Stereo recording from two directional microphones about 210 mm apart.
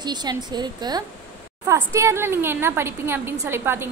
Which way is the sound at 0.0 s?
20° right (ahead or behind).